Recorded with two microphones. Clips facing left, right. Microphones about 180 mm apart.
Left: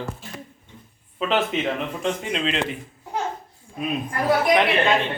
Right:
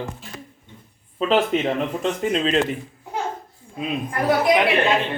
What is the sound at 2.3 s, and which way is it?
Speech, 40° right (ahead or behind).